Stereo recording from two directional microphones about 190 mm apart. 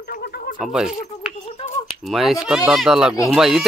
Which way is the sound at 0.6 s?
5° right (ahead or behind).